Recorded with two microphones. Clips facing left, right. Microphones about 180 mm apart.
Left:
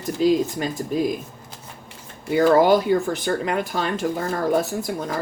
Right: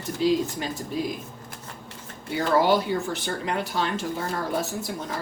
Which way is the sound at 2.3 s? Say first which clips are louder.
Left 6 dB; 50° left (ahead or behind).